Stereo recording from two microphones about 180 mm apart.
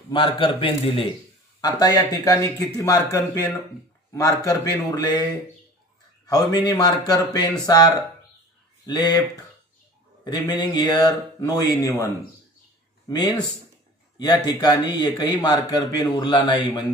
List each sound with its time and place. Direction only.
0.1 s a man's voice: 30° left (ahead or behind)
6.2 s a man's voice: 20° left (ahead or behind)
13.1 s a man's voice: 20° left (ahead or behind)